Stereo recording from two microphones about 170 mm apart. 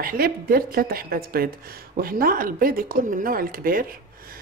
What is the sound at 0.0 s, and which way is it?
A woman's voice, 60° right (ahead or behind).